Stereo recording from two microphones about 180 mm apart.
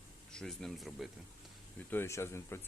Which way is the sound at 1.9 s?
15° left (ahead or behind).